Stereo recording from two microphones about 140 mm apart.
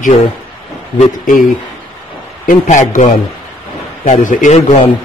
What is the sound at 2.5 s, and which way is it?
Speech, 65° left (ahead or behind).